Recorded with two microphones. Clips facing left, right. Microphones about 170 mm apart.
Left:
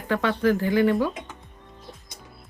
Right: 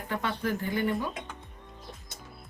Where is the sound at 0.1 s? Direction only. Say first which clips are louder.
Left 9 dB; 90° left.